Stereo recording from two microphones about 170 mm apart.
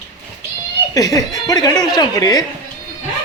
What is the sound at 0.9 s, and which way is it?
Speech, 20° left (ahead or behind).